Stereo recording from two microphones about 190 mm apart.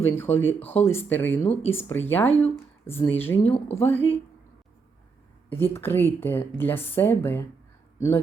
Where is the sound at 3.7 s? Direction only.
10° left (ahead or behind).